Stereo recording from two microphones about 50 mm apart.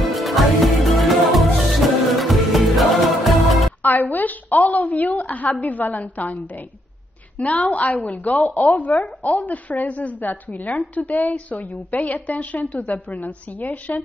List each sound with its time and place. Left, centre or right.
0.0 s music: centre
3.8 s a woman's voice: left